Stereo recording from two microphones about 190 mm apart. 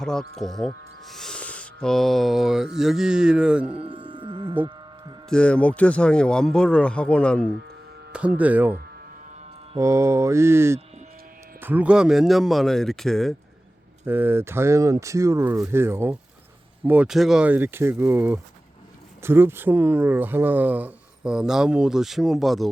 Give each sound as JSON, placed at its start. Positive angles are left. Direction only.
{"t": 0.0, "sound": "speech", "side_deg": 5}
{"t": 1.0, "sound": "mantra", "side_deg": 0}
{"t": 3.7, "sound": "music", "side_deg": -30}
{"t": 5.3, "sound": "speech", "side_deg": 5}
{"t": 8.4, "sound": "speech", "side_deg": -10}
{"t": 9.7, "sound": "speech", "side_deg": -15}
{"t": 14.0, "sound": "speech", "side_deg": -10}